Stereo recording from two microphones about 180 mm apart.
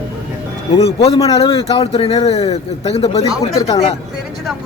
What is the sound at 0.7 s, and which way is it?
Speech, 35° left (ahead or behind).